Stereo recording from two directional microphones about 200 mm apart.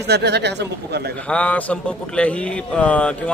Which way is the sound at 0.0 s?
55° right (ahead or behind).